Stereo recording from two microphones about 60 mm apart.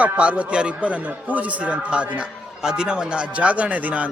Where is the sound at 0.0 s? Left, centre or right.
Right.